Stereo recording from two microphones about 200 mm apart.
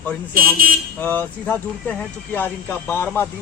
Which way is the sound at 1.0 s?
10° left (ahead or behind).